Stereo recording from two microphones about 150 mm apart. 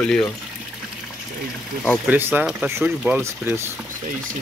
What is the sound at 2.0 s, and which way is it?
Speech, 10° right (ahead or behind).